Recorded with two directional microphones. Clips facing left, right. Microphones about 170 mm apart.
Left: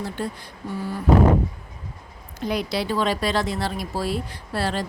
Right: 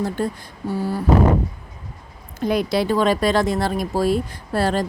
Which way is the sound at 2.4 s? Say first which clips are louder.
Right 5 dB; 50° right (ahead or behind).